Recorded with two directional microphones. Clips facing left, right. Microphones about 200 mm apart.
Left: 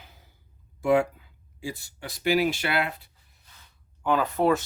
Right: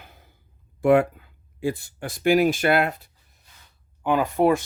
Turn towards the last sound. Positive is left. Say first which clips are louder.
# right 3 dB
turn(degrees=-15)  # may be behind; listen again after turning